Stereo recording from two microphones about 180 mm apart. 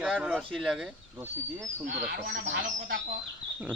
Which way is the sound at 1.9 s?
55° right (ahead or behind).